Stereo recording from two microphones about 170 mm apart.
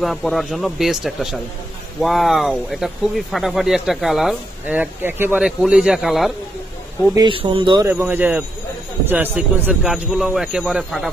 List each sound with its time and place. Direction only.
0.0 s speech: centre (ahead or behind)
7.2 s speech: 30° right (ahead or behind)
7.8 s speech: 10° right (ahead or behind)